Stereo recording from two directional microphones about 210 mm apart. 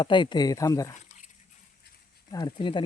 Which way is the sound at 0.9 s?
35° left (ahead or behind).